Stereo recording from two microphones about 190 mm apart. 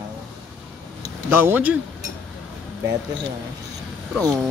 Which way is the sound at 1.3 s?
10° right (ahead or behind).